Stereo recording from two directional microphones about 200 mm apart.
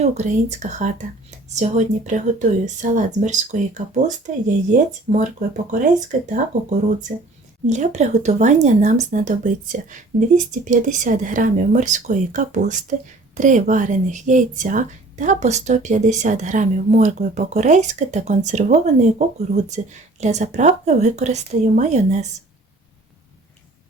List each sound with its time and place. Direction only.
0.0 s speech: 35° right (ahead or behind)